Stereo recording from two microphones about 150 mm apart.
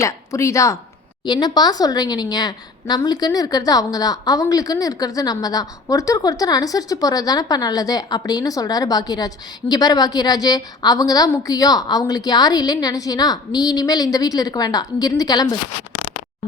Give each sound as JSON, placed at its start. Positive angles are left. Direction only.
{"t": 0.0, "sound": "a woman's voice", "side_deg": 20}